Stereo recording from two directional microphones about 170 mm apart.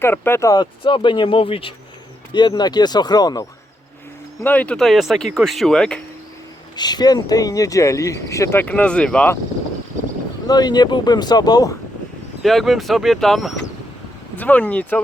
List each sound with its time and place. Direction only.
0.0 s speech: 15° left (ahead or behind)
4.4 s speech: 10° left (ahead or behind)
6.7 s speech: 25° left (ahead or behind); by 9.4 s 10° left (ahead or behind)
10.4 s speech: 25° left (ahead or behind)
12.4 s speech: centre (ahead or behind)